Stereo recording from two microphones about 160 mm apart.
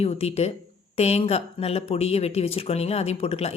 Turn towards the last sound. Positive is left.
turn(degrees=40)  # may be behind; listen again after turning